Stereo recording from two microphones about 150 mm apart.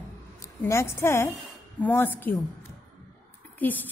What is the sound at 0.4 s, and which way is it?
A woman's voice, 20° left (ahead or behind).